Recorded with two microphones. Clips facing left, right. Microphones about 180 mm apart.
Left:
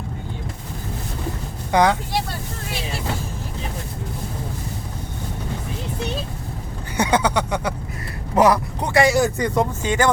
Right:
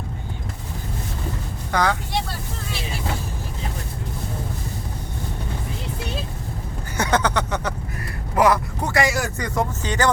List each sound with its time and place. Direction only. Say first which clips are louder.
1.7 s speech: left 5 dB; 20° left (ahead or behind)
6.9 s a sound: left 2 dB; 10° left (ahead or behind)
8.4 s speech: left 2 dB; 25° left (ahead or behind)